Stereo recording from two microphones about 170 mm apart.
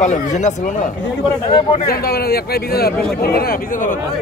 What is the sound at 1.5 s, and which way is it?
Speech, 30° left (ahead or behind).